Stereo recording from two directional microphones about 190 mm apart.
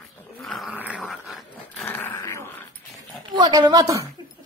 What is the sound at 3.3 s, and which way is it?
Speech, 20° right (ahead or behind).